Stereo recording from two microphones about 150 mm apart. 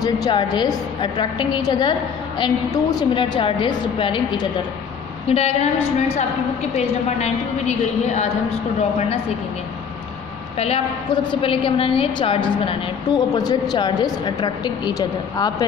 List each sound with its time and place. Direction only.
0.0 s a woman's voice: 30° left (ahead or behind)
5.3 s a woman's voice: 45° left (ahead or behind)
11.4 s a woman's voice: 35° left (ahead or behind)